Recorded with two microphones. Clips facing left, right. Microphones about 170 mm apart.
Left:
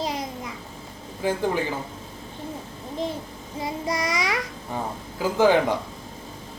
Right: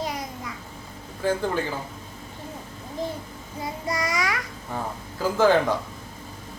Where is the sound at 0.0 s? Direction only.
25° left (ahead or behind).